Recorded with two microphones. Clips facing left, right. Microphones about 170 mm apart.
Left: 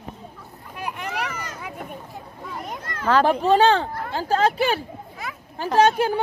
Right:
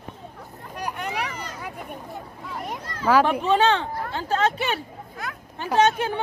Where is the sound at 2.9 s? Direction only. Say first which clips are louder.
Left 2 dB; 55° left (ahead or behind).